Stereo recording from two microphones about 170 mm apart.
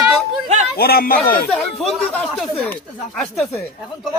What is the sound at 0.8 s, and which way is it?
Speech, 65° left (ahead or behind).